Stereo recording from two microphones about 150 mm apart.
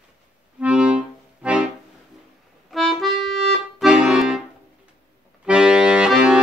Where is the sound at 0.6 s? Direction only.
5° right (ahead or behind).